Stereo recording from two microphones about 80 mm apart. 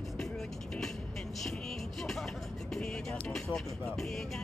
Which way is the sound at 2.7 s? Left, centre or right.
Centre.